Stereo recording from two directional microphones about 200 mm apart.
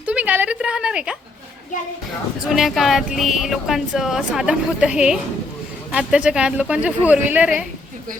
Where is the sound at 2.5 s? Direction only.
Centre (ahead or behind).